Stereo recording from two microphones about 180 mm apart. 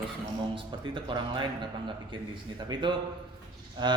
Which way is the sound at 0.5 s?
30° right (ahead or behind).